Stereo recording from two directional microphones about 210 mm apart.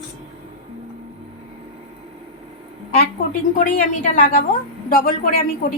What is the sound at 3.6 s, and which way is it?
A woman's voice, 40° left (ahead or behind).